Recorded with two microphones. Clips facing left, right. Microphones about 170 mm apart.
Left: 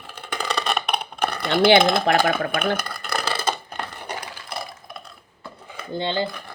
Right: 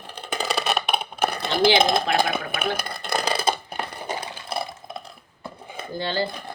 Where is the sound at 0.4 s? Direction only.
5° right (ahead or behind).